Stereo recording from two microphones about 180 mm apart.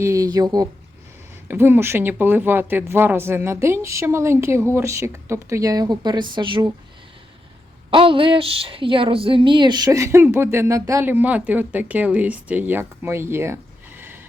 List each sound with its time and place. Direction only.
0.0 s speech: 20° right (ahead or behind)
1.5 s a woman's voice: 10° right (ahead or behind)
7.9 s a woman's voice: 30° right (ahead or behind); by 14.2 s 10° right (ahead or behind)